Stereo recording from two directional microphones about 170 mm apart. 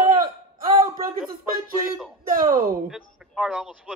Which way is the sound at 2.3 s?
50° right (ahead or behind).